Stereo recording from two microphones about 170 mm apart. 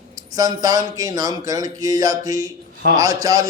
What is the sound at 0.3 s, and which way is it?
Speech, 20° right (ahead or behind).